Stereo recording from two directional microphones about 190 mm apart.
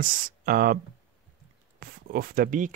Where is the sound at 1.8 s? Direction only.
50° right (ahead or behind).